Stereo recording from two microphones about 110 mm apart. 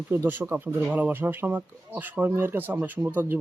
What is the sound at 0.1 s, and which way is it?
Speech, 20° right (ahead or behind).